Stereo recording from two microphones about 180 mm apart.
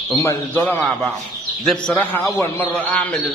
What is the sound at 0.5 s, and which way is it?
A man's voice, 10° left (ahead or behind).